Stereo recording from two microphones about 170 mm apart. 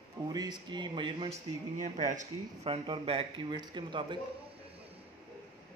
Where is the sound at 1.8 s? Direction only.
45° right (ahead or behind); by 4.2 s 25° right (ahead or behind).